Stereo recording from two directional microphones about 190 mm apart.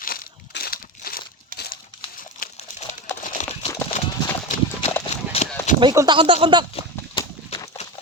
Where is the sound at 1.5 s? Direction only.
55° left (ahead or behind).